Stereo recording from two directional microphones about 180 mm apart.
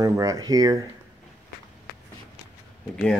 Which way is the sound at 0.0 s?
20° right (ahead or behind).